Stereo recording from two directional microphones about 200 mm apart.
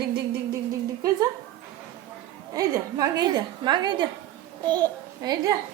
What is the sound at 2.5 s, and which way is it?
A woman's voice, 20° right (ahead or behind).